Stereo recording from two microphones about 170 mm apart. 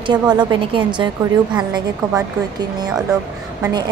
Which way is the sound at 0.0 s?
25° right (ahead or behind).